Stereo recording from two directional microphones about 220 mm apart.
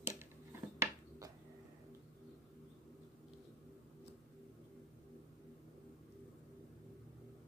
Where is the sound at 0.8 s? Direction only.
15° right (ahead or behind).